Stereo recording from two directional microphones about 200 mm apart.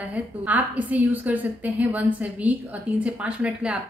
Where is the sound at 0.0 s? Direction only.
10° right (ahead or behind).